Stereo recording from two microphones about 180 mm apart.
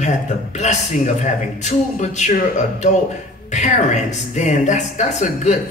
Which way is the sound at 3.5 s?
40° left (ahead or behind).